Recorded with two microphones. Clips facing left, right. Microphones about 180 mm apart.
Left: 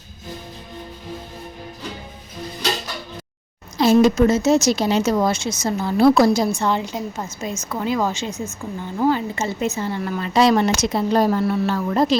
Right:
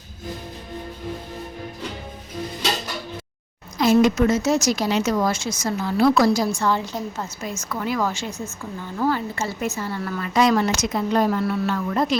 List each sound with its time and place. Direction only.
3.8 s a woman's voice: 30° left (ahead or behind)